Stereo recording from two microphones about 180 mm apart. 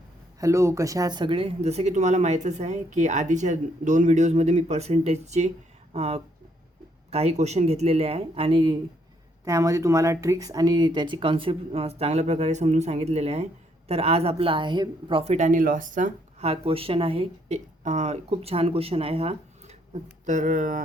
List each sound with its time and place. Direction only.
0.3 s speech: 15° right (ahead or behind)
9.4 s speech: 15° right (ahead or behind); by 20.8 s 45° right (ahead or behind)